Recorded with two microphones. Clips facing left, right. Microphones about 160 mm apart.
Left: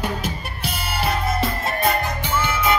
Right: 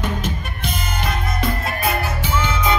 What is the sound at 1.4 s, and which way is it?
Music, centre (ahead or behind).